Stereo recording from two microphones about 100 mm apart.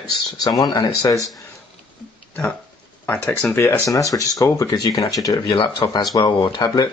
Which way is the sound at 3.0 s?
20° left (ahead or behind).